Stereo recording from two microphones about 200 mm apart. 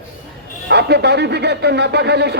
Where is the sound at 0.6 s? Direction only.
55° right (ahead or behind).